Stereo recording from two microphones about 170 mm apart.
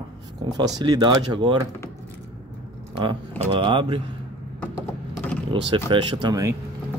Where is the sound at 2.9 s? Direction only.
30° right (ahead or behind).